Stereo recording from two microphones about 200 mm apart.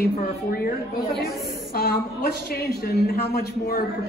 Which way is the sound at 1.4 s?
50° left (ahead or behind).